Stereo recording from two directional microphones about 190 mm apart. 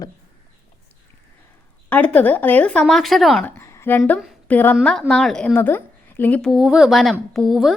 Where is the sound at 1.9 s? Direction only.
10° left (ahead or behind).